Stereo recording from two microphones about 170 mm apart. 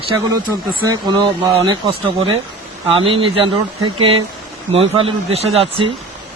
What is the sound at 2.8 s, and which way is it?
Speech, 30° right (ahead or behind).